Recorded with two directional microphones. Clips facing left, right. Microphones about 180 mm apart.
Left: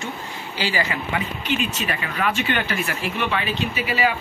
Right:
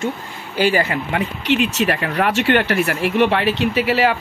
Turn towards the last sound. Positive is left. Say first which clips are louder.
# right 6 dB
turn(degrees=-80)